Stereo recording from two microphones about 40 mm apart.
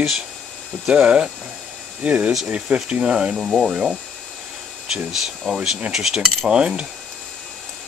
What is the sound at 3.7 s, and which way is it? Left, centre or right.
Speech, right.